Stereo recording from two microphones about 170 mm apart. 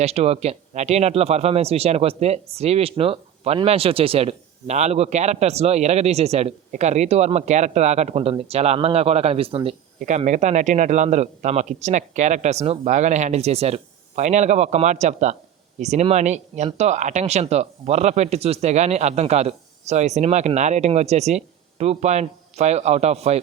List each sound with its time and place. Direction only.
0.0 s speech: 40° right (ahead or behind)
10.0 s a man's voice: 45° right (ahead or behind)